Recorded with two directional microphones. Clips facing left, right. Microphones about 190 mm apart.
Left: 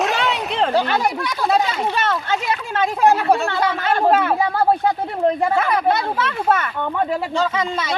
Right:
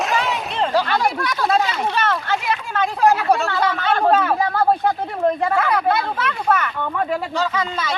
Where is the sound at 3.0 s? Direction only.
20° left (ahead or behind).